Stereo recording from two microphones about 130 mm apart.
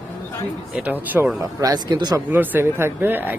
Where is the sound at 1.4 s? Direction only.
30° right (ahead or behind).